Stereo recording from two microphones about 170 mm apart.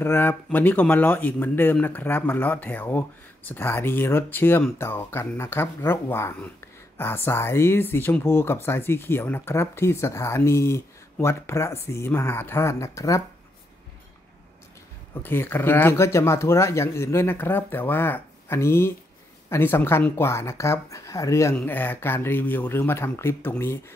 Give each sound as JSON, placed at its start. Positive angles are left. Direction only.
{"t": 0.0, "sound": "speech", "side_deg": 15}
{"t": 15.2, "sound": "speech", "side_deg": 10}